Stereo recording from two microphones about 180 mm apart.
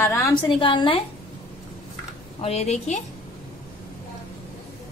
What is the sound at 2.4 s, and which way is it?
Speech, 35° left (ahead or behind).